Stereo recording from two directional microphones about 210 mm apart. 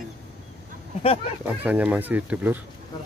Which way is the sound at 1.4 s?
5° right (ahead or behind).